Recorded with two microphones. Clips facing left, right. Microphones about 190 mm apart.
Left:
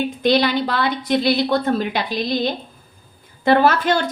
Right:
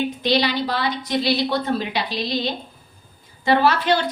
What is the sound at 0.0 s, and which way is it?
Speech, 50° left (ahead or behind).